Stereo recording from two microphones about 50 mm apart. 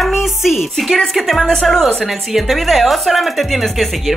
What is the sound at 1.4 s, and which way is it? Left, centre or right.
A woman's voice, centre.